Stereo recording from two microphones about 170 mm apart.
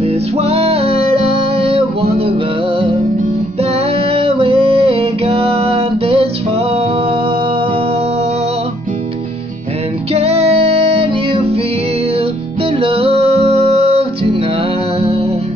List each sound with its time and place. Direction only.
0.0 s music: 35° right (ahead or behind)
4.1 s music: 30° right (ahead or behind)
10.1 s music: 35° right (ahead or behind)
12.8 s music: 35° right (ahead or behind)